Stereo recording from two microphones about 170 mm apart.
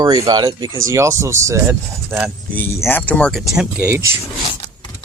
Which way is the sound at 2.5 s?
15° left (ahead or behind).